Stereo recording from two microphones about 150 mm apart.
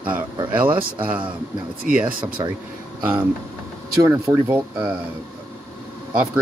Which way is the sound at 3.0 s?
10° right (ahead or behind).